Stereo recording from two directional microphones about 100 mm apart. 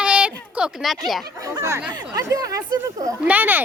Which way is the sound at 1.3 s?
30° right (ahead or behind).